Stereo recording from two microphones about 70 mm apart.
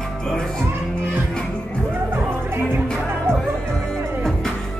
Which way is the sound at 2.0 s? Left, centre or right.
Right.